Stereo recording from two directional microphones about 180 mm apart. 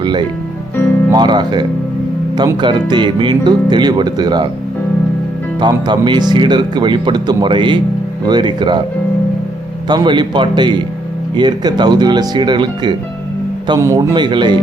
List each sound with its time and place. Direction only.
0.0 s speech: 25° right (ahead or behind)
5.5 s speech: 25° right (ahead or behind)
9.9 s speech: 25° right (ahead or behind)